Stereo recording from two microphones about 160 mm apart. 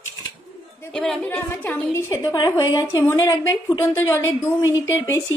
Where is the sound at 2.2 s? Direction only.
25° left (ahead or behind).